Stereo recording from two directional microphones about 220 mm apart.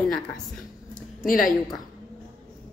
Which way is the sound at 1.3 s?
40° left (ahead or behind).